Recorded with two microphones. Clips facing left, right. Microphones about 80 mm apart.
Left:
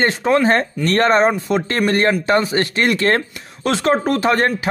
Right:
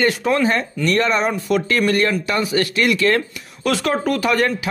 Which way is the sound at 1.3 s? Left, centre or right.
Left.